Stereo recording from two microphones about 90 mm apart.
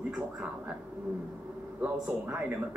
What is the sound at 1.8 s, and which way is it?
Speech, 20° right (ahead or behind).